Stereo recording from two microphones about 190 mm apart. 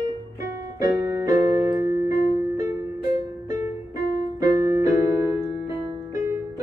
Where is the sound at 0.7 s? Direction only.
20° right (ahead or behind).